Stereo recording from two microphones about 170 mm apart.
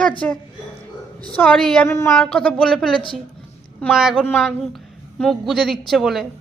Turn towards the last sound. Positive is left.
turn(degrees=0)  # may be behind; listen again after turning